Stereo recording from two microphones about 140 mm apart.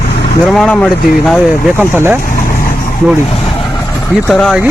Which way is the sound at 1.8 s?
15° right (ahead or behind).